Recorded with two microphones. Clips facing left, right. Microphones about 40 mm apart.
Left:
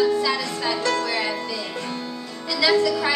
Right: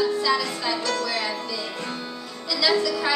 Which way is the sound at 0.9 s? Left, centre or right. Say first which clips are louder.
Left 5 dB; left.